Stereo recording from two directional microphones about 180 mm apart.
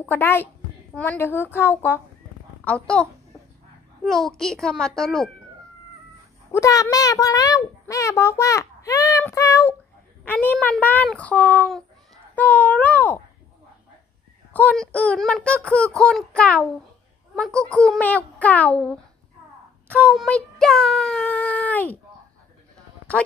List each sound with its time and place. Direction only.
0.0 s a child's voice: 10° left (ahead or behind)
6.5 s a child's voice: 20° left (ahead or behind)
14.5 s a child's voice: 10° left (ahead or behind)